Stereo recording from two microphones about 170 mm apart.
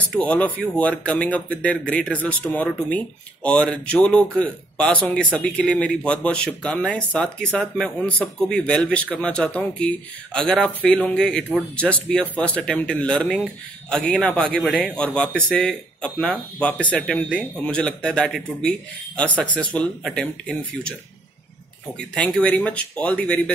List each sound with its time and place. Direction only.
0.1 s speech: 10° left (ahead or behind)
21.9 s speech: 5° left (ahead or behind)